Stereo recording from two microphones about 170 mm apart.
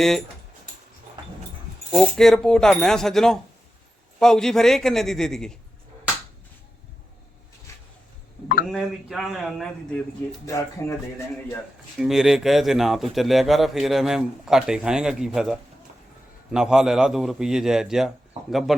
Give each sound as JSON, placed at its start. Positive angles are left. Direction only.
{"t": 1.9, "sound": "a man's voice", "side_deg": 0}
{"t": 7.7, "sound": "a sound", "side_deg": 15}
{"t": 8.7, "sound": "a man's voice", "side_deg": 0}
{"t": 10.4, "sound": "speech", "side_deg": 20}
{"t": 11.9, "sound": "a man's voice", "side_deg": 0}